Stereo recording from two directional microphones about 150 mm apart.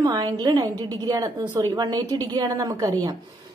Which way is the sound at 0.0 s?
25° right (ahead or behind).